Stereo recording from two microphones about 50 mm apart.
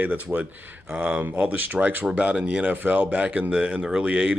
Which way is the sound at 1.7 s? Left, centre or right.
Right.